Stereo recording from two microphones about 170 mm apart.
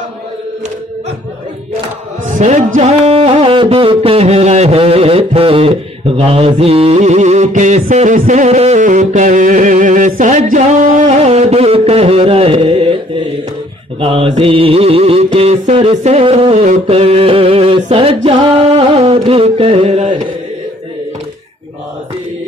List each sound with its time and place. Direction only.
2.2 s music: 50° right (ahead or behind)